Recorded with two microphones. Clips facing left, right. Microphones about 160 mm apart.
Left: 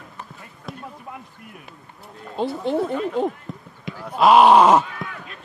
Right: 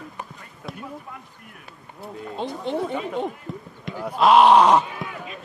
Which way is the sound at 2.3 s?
Centre (ahead or behind).